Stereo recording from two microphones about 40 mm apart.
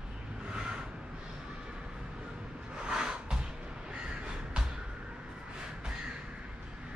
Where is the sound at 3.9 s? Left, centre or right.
Right.